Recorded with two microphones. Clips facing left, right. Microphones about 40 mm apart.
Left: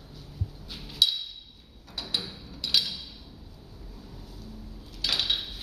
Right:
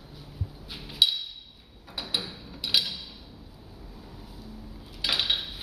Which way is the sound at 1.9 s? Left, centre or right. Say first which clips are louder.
Right 1 dB; centre.